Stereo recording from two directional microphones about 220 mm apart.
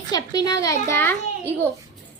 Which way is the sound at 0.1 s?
20° left (ahead or behind).